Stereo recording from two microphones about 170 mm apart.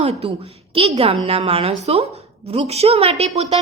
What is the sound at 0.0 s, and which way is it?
A woman's voice, 35° right (ahead or behind).